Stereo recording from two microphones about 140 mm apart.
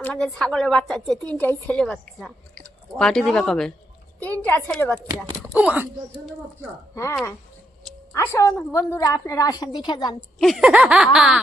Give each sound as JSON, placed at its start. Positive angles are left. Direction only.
{"t": 0.0, "sound": "a woman's voice", "side_deg": 5}
{"t": 5.5, "sound": "speech", "side_deg": -10}
{"t": 6.9, "sound": "a woman's voice", "side_deg": 20}
{"t": 10.3, "sound": "a woman's voice", "side_deg": 0}